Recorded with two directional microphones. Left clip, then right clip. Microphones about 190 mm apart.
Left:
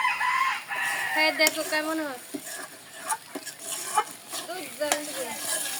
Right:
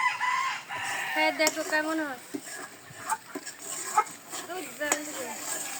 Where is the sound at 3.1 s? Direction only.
30° left (ahead or behind).